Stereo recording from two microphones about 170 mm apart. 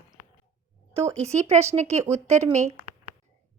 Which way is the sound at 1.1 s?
40° right (ahead or behind).